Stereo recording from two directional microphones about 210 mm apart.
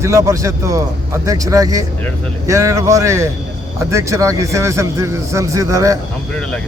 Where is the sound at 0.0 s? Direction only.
15° right (ahead or behind).